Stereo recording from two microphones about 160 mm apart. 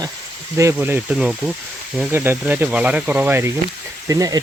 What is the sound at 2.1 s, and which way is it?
Speech, 15° right (ahead or behind).